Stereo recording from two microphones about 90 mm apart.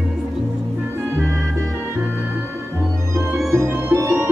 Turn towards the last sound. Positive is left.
turn(degrees=-25)  # may be behind; listen again after turning